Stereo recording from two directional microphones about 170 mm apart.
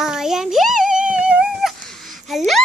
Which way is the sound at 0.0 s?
5° right (ahead or behind).